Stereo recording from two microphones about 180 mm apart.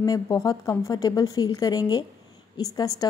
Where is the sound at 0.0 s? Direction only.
20° left (ahead or behind).